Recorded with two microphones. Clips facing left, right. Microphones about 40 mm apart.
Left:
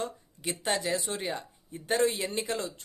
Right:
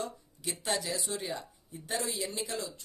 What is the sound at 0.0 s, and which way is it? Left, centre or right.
Speech, left.